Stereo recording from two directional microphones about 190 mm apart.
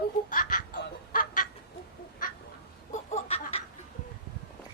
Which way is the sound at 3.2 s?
30° left (ahead or behind).